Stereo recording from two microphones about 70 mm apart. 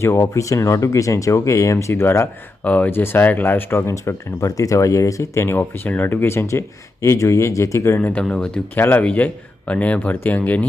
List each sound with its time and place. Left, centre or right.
0.0 s speech: left
2.6 s speech: left
7.9 s speech: left
8.2 s speech: centre
8.7 s speech: left